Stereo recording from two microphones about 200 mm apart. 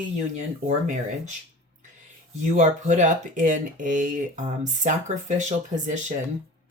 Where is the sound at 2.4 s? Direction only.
35° right (ahead or behind).